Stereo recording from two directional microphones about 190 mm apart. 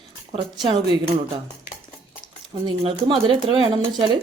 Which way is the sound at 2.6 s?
25° right (ahead or behind).